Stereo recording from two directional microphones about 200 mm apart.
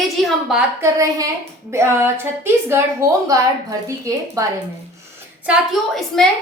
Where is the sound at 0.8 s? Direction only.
15° right (ahead or behind).